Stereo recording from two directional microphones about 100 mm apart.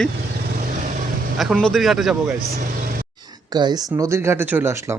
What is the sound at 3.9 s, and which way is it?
Speech, 30° right (ahead or behind).